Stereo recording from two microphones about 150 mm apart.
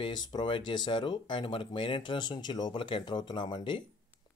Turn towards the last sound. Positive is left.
turn(degrees=30)  # may be behind; listen again after turning